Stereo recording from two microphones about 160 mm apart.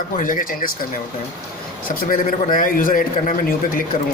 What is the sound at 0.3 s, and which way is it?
Speech, 60° left (ahead or behind).